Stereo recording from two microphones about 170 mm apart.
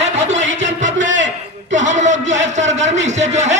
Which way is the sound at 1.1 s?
90° right.